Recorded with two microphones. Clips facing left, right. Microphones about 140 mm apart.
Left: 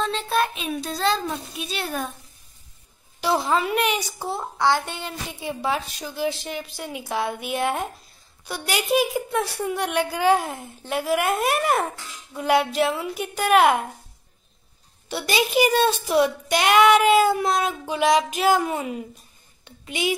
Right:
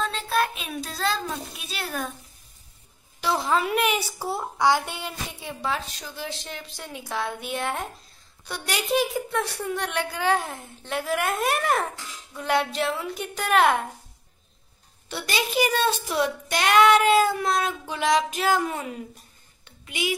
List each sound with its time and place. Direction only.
0.0 s child singing: centre (ahead or behind)
1.0 s a child's voice: centre (ahead or behind)
3.4 s a woman's voice: centre (ahead or behind)
5.4 s a woman's voice: 10° left (ahead or behind)
15.0 s a woman's voice: 15° left (ahead or behind)
19.9 s a child's voice: 25° left (ahead or behind)